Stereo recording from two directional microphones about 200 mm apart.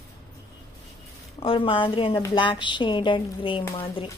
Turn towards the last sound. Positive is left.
turn(degrees=30)  # may be behind; listen again after turning